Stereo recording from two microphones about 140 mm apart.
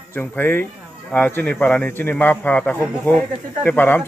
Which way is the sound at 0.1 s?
15° left (ahead or behind).